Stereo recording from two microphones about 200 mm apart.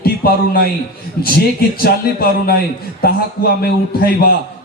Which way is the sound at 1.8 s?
50° left (ahead or behind).